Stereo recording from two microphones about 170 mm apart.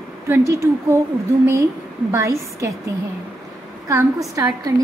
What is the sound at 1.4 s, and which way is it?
A woman's voice, 15° right (ahead or behind).